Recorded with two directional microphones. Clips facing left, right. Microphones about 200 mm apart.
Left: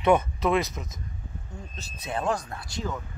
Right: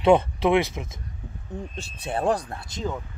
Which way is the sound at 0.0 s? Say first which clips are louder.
Right 4 dB; 30° right (ahead or behind).